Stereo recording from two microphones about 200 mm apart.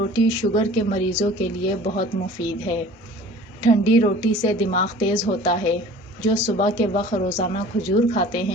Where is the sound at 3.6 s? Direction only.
30° left (ahead or behind).